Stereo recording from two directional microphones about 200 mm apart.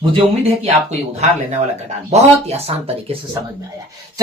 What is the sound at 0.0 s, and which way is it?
Speech, 25° right (ahead or behind).